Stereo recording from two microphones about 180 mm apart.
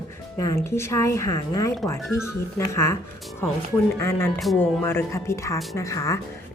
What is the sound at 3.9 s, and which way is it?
Speech, 15° left (ahead or behind).